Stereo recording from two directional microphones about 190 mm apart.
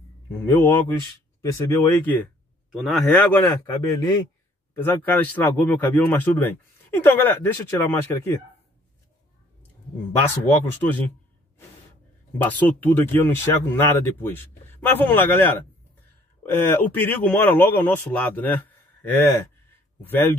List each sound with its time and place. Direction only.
0.4 s a man's voice: 10° left (ahead or behind)
2.7 s a man's voice: centre (ahead or behind)
10.5 s a man's voice: 10° left (ahead or behind)
12.4 s a man's voice: 10° left (ahead or behind)